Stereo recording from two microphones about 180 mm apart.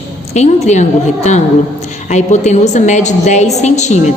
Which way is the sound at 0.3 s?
40° left (ahead or behind).